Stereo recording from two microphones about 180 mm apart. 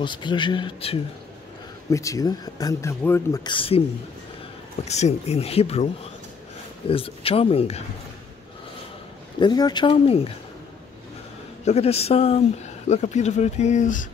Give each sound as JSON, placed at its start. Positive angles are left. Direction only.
{"t": 0.0, "sound": "speech", "side_deg": 25}
{"t": 1.9, "sound": "speech", "side_deg": 15}
{"t": 4.8, "sound": "speech", "side_deg": 40}
{"t": 6.9, "sound": "speech", "side_deg": 30}
{"t": 9.4, "sound": "speech", "side_deg": 25}
{"t": 11.6, "sound": "speech", "side_deg": 35}